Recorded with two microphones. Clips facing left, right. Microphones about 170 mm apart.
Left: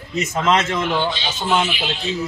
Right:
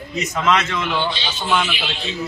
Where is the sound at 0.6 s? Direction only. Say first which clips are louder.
Left 2 dB; 45° left (ahead or behind).